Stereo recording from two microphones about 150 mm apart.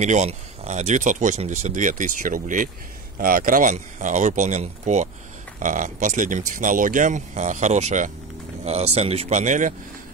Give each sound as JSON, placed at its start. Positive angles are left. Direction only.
{"t": 0.0, "sound": "speech", "side_deg": -50}